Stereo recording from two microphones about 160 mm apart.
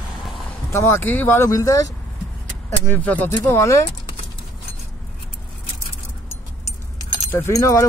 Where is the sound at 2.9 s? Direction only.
10° left (ahead or behind).